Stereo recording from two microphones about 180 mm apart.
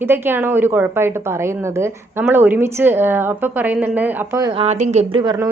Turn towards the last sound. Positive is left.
turn(degrees=-25)  # may be behind; listen again after turning